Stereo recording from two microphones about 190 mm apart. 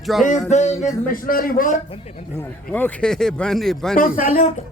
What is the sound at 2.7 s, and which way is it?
Speech, 10° left (ahead or behind).